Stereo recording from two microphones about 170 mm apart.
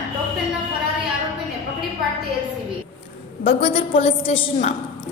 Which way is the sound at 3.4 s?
35° left (ahead or behind).